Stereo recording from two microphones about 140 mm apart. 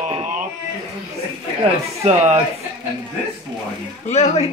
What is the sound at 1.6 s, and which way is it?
Speech, 50° right (ahead or behind).